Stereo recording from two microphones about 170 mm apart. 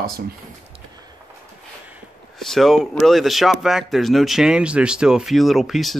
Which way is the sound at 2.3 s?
Centre (ahead or behind).